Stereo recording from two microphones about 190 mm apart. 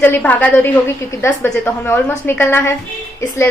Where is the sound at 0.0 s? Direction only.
10° left (ahead or behind).